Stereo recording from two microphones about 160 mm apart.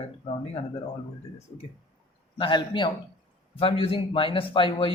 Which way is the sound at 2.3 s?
30° left (ahead or behind).